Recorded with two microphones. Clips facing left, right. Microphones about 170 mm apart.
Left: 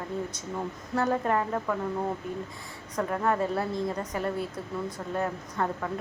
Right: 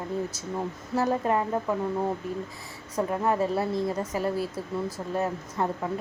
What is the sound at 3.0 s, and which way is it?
A woman's voice, 20° right (ahead or behind).